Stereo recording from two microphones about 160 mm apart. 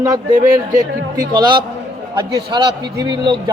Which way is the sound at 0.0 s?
25° right (ahead or behind).